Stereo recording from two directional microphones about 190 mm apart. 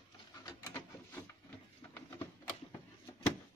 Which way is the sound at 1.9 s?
10° left (ahead or behind).